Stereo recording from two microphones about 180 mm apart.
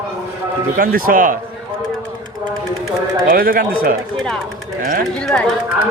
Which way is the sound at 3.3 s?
55° right (ahead or behind).